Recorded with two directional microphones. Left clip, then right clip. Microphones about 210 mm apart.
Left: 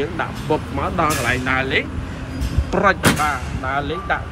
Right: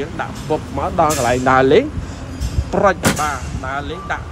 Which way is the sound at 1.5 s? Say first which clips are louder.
Right 11 dB; 20° right (ahead or behind).